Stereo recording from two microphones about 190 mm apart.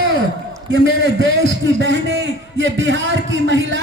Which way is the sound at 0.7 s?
80° right.